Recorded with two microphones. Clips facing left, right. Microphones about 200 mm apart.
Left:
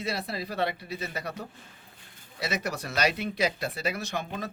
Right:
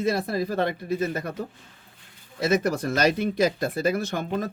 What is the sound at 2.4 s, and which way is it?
Speech, 50° right (ahead or behind).